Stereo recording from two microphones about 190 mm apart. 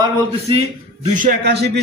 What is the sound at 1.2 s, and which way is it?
Speech, 60° right (ahead or behind).